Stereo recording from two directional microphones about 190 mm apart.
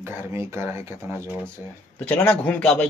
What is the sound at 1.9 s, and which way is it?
Speech, 5° left (ahead or behind).